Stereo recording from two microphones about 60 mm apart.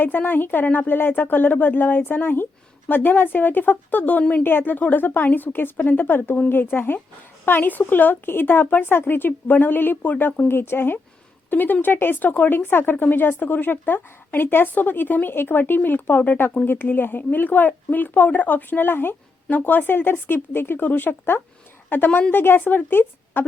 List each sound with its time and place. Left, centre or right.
0.0 s speech: left
4.2 s speech: centre
4.4 s speech: left
10.5 s speech: left